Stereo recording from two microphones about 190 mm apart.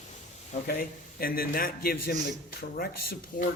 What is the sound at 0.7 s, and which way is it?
Speech, 50° left (ahead or behind).